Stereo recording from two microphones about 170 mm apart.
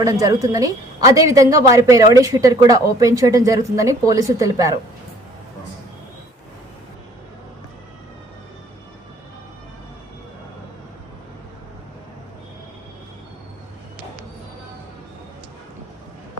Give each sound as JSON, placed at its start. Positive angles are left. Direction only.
{"t": 0.0, "sound": "a woman's voice", "side_deg": -20}